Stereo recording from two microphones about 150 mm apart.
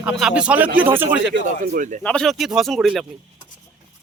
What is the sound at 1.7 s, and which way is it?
Speech, 55° right (ahead or behind).